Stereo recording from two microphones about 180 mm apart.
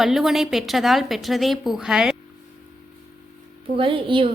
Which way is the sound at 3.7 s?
30° right (ahead or behind).